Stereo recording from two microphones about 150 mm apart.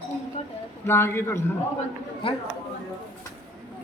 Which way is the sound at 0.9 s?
15° left (ahead or behind).